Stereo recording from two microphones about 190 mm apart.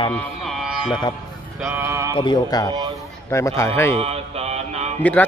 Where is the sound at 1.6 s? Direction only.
15° right (ahead or behind).